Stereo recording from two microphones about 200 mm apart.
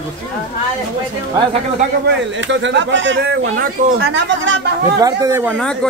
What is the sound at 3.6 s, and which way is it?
Speech, 50° right (ahead or behind).